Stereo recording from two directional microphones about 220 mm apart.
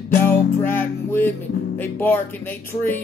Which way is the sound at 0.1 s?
10° left (ahead or behind).